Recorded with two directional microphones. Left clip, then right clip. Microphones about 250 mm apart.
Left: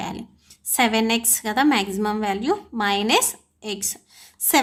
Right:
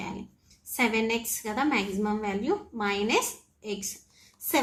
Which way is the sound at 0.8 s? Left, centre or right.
Left.